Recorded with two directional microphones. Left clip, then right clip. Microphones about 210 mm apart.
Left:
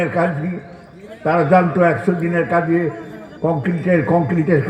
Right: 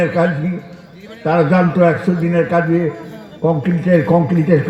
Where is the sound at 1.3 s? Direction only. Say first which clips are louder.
Even; 40° right (ahead or behind).